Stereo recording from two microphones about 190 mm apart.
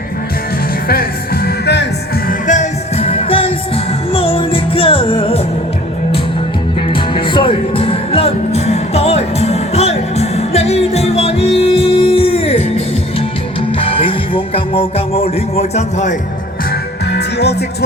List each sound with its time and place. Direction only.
0.9 s music: 55° left (ahead or behind)
2.5 s music: 35° left (ahead or behind)
6.9 s music: 25° left (ahead or behind)
17.1 s music: 60° left (ahead or behind)